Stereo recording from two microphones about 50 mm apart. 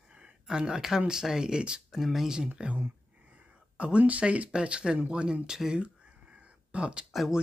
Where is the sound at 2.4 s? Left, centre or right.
Right.